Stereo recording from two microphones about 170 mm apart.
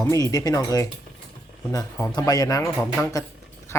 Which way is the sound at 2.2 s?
20° left (ahead or behind).